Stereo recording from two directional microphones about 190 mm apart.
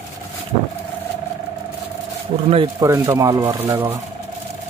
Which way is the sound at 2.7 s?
15° right (ahead or behind).